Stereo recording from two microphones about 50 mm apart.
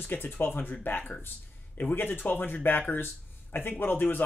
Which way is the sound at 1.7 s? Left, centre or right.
Left.